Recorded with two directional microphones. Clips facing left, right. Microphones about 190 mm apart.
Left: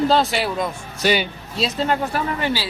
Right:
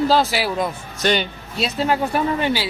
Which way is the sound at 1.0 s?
10° left (ahead or behind).